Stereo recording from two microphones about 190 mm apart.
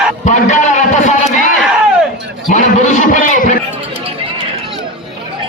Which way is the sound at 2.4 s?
40° left (ahead or behind).